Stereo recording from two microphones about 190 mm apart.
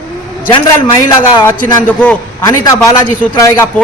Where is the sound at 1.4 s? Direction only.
10° left (ahead or behind).